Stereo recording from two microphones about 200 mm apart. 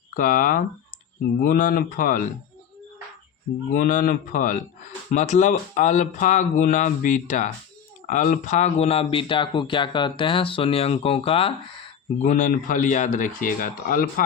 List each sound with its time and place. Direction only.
0.1 s speech: 45° left (ahead or behind)
3.7 s speech: 40° left (ahead or behind)
12.2 s speech: 40° left (ahead or behind)